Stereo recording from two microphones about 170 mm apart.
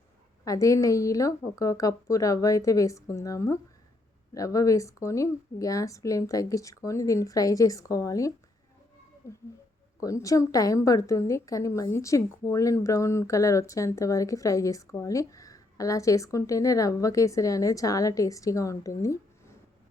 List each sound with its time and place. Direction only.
0.4 s a woman's voice: 20° left (ahead or behind)
9.2 s a sound: 15° left (ahead or behind)
10.0 s a woman's voice: 20° left (ahead or behind)